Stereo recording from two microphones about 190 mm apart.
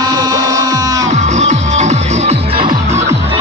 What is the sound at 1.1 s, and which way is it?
Music, 40° right (ahead or behind).